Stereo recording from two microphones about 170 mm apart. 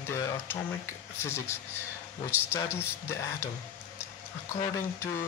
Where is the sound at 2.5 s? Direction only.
15° left (ahead or behind).